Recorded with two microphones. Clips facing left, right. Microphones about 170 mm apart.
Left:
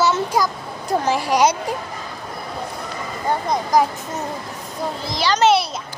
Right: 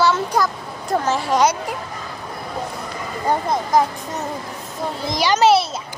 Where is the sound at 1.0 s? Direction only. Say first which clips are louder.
Left 1 dB; 15° left (ahead or behind).